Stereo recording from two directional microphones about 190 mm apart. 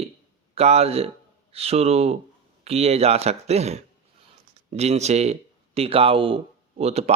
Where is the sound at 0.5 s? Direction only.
35° right (ahead or behind).